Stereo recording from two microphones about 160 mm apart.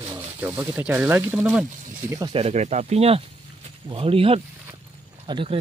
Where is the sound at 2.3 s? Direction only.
40° right (ahead or behind).